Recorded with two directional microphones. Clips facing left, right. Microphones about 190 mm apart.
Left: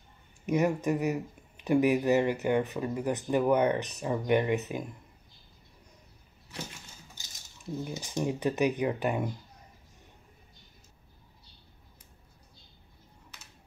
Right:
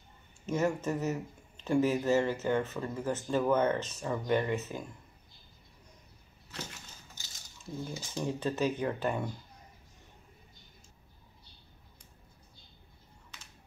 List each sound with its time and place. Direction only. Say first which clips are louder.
0.5 s speech: left 4 dB; 15° left (ahead or behind)
7.8 s speech: left 3 dB; 15° left (ahead or behind)